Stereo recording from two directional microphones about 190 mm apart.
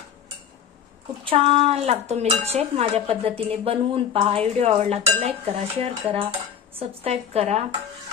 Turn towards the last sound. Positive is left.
turn(degrees=-35)  # may be behind; listen again after turning